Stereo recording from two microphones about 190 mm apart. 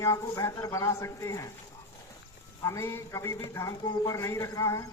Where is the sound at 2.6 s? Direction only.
15° left (ahead or behind).